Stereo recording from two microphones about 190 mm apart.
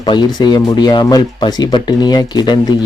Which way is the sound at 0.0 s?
20° left (ahead or behind).